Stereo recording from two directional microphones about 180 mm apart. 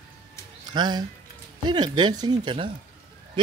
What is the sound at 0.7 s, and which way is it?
Speech, 25° right (ahead or behind).